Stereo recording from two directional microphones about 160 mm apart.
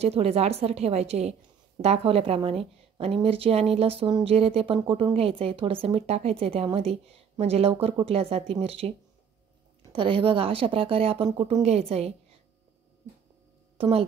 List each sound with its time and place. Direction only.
0.0 s a woman's voice: 40° right (ahead or behind)
9.9 s a woman's voice: 35° right (ahead or behind)
13.7 s speech: 35° right (ahead or behind)